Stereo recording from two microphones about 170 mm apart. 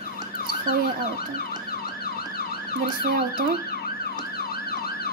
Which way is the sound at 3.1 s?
55° right (ahead or behind).